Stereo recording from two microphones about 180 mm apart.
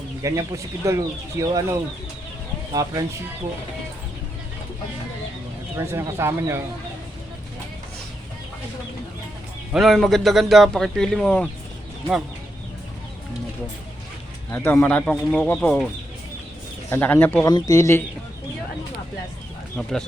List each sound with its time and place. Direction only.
0.2 s speech: 15° right (ahead or behind)
5.7 s speech: 15° right (ahead or behind)
9.7 s speech: centre (ahead or behind)
14.5 s speech: 10° left (ahead or behind)
16.9 s speech: 10° left (ahead or behind)
19.7 s speech: 5° left (ahead or behind)